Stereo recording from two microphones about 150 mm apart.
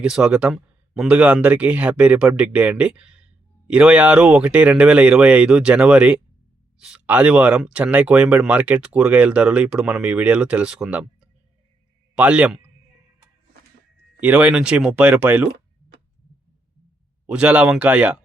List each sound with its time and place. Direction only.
0.0 s speech: 5° right (ahead or behind)
12.1 s a man's voice: 10° right (ahead or behind)
14.2 s speech: 10° right (ahead or behind)
17.2 s speech: 10° right (ahead or behind)